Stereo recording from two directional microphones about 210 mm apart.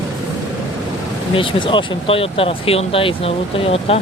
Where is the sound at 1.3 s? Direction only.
25° left (ahead or behind).